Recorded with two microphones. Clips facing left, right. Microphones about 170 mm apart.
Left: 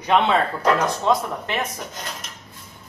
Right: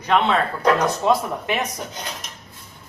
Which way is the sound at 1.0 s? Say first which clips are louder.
Right 1 dB; 15° right (ahead or behind).